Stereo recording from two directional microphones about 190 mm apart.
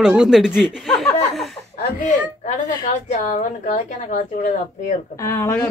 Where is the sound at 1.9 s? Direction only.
40° left (ahead or behind).